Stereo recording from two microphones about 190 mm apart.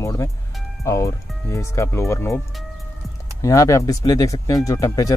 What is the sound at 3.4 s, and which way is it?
Speech, 15° left (ahead or behind).